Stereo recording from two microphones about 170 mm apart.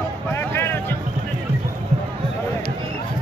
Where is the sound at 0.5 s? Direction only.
15° left (ahead or behind).